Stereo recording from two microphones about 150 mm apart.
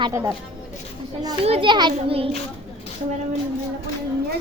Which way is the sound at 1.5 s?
35° right (ahead or behind).